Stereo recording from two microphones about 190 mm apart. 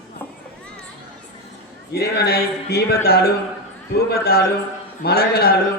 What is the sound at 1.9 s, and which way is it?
A man's voice, 55° left (ahead or behind).